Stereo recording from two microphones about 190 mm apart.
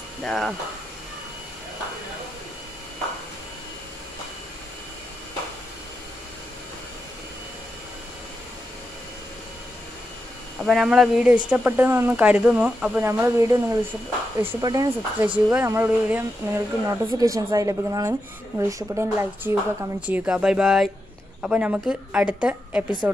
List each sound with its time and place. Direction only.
0.2 s speech: centre (ahead or behind)
10.6 s speech: centre (ahead or behind); by 15.2 s 20° right (ahead or behind)
15.2 s speech: 10° right (ahead or behind)